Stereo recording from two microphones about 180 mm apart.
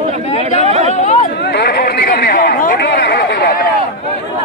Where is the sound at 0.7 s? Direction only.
35° right (ahead or behind).